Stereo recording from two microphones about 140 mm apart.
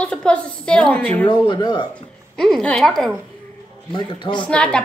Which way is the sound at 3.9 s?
30° left (ahead or behind).